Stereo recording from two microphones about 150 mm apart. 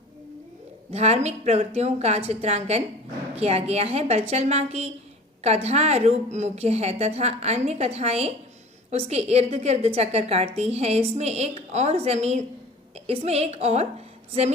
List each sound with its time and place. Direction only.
0.9 s a woman's voice: 45° right (ahead or behind)